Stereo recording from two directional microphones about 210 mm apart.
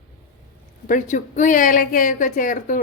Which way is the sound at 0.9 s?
35° left (ahead or behind).